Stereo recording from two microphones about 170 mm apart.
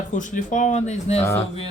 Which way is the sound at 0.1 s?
50° left (ahead or behind).